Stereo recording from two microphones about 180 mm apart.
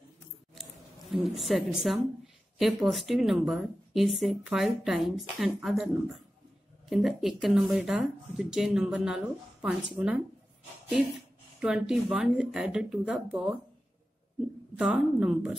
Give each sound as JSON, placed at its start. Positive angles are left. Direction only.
{"t": 1.1, "sound": "speech", "side_deg": 0}
{"t": 6.9, "sound": "speech", "side_deg": 0}
{"t": 11.6, "sound": "speech", "side_deg": 0}
{"t": 14.8, "sound": "speech", "side_deg": -5}